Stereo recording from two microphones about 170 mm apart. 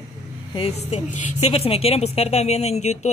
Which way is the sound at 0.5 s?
35° left (ahead or behind).